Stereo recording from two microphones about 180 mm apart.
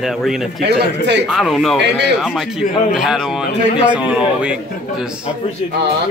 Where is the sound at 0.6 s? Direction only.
75° right (ahead or behind).